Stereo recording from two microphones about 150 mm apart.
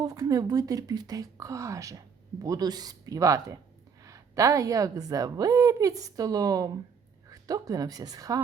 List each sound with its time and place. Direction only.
0.0 s a woman's voice: 25° right (ahead or behind)